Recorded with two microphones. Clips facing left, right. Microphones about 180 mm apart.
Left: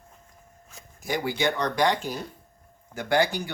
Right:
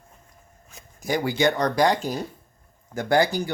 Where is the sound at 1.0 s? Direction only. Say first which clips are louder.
Right 4 dB; 40° right (ahead or behind).